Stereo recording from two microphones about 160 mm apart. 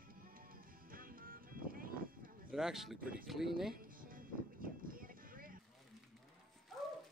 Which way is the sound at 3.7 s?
60° right (ahead or behind).